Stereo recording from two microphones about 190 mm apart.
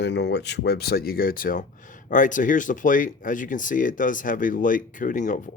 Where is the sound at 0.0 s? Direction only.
65° left (ahead or behind).